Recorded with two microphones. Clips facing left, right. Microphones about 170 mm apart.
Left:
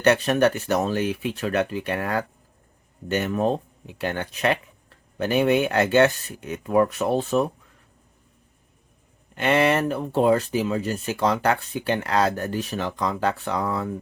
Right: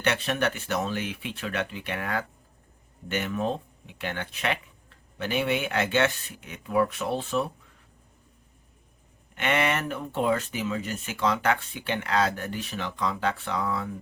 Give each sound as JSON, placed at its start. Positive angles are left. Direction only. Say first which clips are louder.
{"t": 0.0, "sound": "speech", "louder": "left 8 dB", "side_deg": 40}
{"t": 9.3, "sound": "speech", "louder": "left 6 dB", "side_deg": 35}